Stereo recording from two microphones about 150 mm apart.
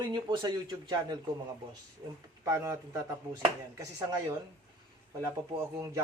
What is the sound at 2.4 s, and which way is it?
Speech, 20° right (ahead or behind).